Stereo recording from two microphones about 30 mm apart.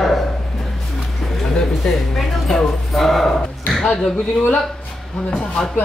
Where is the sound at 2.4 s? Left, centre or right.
Centre.